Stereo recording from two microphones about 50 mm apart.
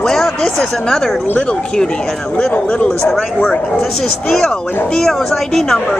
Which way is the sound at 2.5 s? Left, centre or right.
Left.